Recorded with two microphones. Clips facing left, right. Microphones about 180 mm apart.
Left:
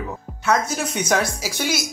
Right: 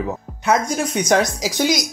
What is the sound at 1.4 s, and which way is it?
Speech, 15° right (ahead or behind).